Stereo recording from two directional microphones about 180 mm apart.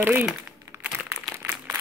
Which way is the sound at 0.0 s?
10° right (ahead or behind).